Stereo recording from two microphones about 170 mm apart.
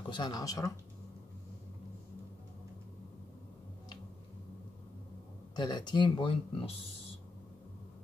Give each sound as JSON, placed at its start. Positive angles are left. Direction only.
{"t": 0.0, "sound": "speech", "side_deg": 25}
{"t": 5.6, "sound": "speech", "side_deg": 25}